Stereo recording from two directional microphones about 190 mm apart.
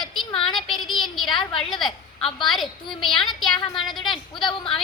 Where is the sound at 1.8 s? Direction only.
25° left (ahead or behind).